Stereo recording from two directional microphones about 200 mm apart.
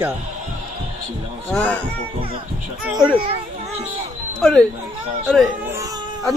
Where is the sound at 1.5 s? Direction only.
5° left (ahead or behind).